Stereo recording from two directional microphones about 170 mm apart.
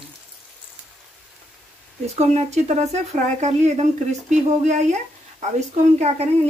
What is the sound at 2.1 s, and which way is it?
Speech, 40° right (ahead or behind).